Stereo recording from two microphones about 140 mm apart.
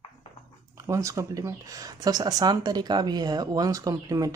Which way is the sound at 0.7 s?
20° right (ahead or behind).